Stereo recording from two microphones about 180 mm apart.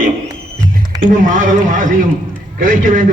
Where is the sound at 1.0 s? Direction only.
45° right (ahead or behind).